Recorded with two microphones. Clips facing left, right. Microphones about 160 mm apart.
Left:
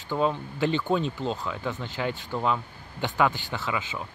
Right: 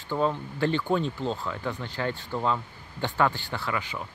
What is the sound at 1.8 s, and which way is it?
Speech, 15° left (ahead or behind).